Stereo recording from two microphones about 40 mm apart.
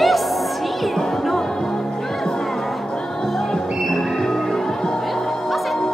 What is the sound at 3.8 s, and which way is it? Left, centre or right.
Music, centre.